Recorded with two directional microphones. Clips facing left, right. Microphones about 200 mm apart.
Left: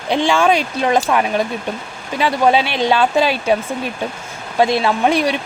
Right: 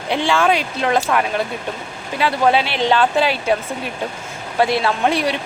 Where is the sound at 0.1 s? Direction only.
15° left (ahead or behind).